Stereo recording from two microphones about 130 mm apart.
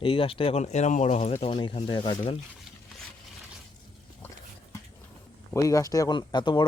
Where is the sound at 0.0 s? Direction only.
45° left (ahead or behind).